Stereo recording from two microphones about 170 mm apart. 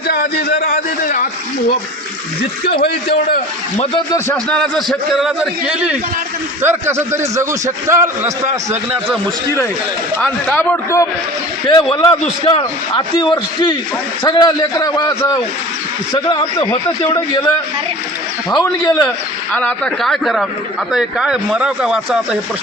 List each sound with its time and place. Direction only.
0.1 s a man's voice: 65° left (ahead or behind)
2.6 s a man's voice: 70° left (ahead or behind)
4.4 s a man's voice: 5° left (ahead or behind)
10.2 s a man's voice: 10° left (ahead or behind)
11.7 s a man's voice: 25° left (ahead or behind)
18.6 s a man's voice: 15° left (ahead or behind); by 22.4 s 5° right (ahead or behind)